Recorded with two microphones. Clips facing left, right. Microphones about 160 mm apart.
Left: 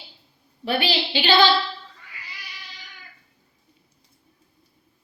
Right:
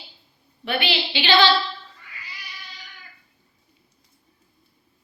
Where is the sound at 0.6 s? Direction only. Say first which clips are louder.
Left 2 dB; 35° left (ahead or behind).